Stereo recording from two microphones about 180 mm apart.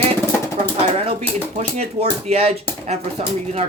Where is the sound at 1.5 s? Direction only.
35° right (ahead or behind).